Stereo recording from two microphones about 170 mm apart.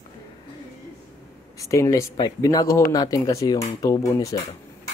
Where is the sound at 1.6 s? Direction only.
20° left (ahead or behind).